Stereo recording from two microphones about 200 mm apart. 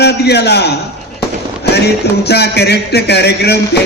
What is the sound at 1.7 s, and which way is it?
Speech, 55° left (ahead or behind).